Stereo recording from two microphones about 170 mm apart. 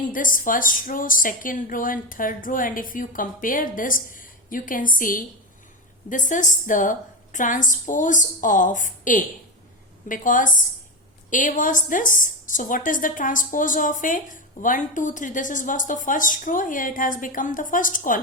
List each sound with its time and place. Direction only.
0.1 s a woman's voice: 55° left (ahead or behind)